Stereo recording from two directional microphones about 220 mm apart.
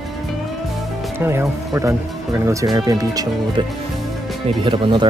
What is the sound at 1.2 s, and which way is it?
Speech, 10° right (ahead or behind).